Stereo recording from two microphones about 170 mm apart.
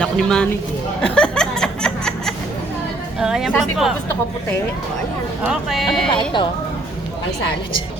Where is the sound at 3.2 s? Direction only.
Centre (ahead or behind).